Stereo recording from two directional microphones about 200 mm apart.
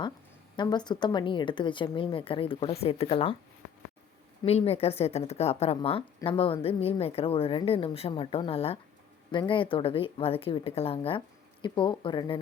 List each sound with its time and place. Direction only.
0.5 s a woman's voice: 20° left (ahead or behind)
4.4 s a woman's voice: 30° left (ahead or behind)